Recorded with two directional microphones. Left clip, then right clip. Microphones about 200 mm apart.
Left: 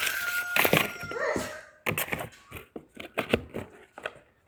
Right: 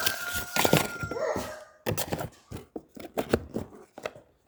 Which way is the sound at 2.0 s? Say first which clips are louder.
Left 1 dB; 20° right (ahead or behind).